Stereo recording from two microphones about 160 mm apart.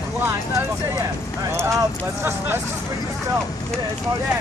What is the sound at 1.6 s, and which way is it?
Clip-clop, 15° right (ahead or behind).